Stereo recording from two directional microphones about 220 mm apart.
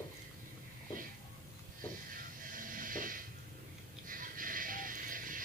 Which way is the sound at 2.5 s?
40° right (ahead or behind).